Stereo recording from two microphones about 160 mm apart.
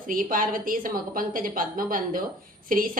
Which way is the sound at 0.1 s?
60° right (ahead or behind).